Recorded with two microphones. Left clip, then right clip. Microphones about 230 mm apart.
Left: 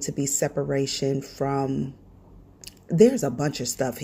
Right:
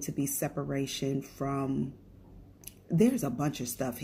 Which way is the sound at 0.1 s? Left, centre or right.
Left.